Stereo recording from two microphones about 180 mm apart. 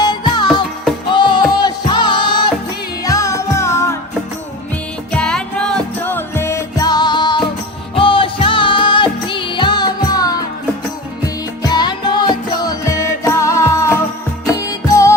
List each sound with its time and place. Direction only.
0.0 s music: 25° left (ahead or behind)
11.6 s music: 25° left (ahead or behind)